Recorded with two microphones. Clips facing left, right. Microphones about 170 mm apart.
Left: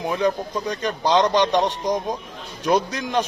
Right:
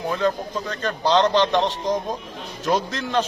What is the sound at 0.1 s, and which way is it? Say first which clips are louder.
Speech: left 1 dB; 15° left (ahead or behind).